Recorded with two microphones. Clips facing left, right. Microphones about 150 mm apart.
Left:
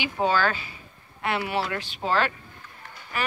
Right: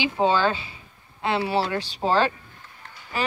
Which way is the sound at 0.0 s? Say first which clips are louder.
Right 3 dB; 25° right (ahead or behind).